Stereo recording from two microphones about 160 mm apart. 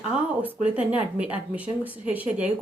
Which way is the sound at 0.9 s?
10° right (ahead or behind).